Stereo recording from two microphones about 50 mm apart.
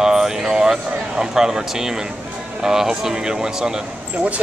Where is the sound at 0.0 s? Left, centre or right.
Centre.